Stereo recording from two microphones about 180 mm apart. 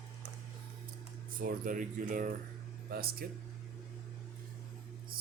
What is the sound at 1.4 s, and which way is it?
Speech, 50° right (ahead or behind).